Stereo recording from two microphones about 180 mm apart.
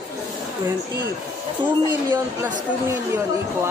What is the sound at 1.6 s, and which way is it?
Speech, 10° right (ahead or behind).